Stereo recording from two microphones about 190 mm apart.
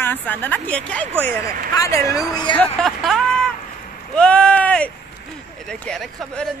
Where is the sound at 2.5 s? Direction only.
5° left (ahead or behind).